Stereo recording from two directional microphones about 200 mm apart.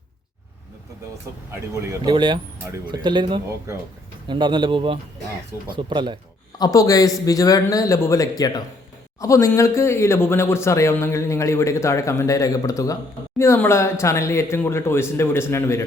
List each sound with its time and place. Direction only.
1.5 s speech: 15° right (ahead or behind)
6.6 s speech: 15° left (ahead or behind)